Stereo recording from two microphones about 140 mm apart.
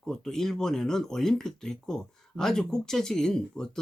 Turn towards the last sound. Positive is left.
turn(degrees=5)  # may be behind; listen again after turning